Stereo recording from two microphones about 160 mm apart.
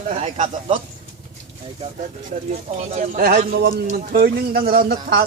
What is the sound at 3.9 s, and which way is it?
Speech, 80° right.